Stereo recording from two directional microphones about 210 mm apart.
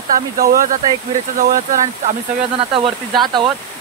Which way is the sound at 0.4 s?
40° right (ahead or behind).